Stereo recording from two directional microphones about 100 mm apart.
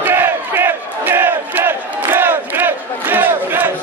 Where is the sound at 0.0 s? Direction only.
20° right (ahead or behind).